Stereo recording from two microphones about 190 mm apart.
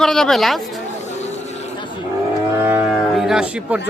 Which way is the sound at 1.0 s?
35° left (ahead or behind).